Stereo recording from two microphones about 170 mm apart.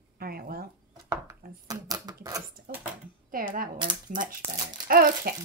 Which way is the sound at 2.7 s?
65° right (ahead or behind).